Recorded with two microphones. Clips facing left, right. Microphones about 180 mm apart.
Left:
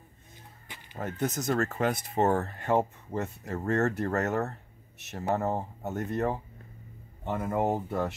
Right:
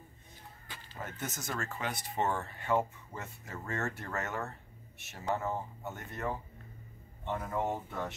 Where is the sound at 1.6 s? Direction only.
45° left (ahead or behind).